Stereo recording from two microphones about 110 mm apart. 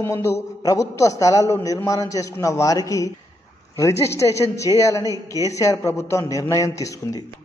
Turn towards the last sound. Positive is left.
turn(degrees=30)  # may be behind; listen again after turning